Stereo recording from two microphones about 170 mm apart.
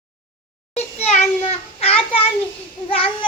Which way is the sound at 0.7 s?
40° left (ahead or behind).